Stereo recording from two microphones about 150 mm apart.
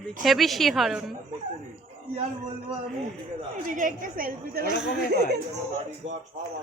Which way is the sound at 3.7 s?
60° right (ahead or behind).